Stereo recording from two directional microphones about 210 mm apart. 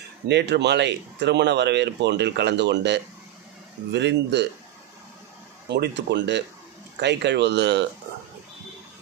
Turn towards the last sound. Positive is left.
turn(degrees=-55)  # may be behind; listen again after turning